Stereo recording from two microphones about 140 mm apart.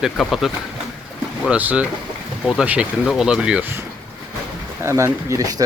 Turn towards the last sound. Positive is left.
turn(degrees=-20)  # may be behind; listen again after turning